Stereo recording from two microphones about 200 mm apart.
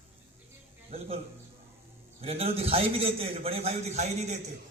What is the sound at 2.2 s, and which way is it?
A man's voice, 30° right (ahead or behind).